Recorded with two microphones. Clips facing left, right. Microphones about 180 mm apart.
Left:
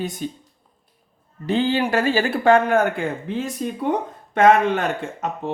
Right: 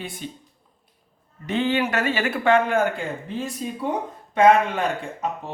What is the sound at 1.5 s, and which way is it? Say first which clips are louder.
Speech: left 3 dB; 35° left (ahead or behind).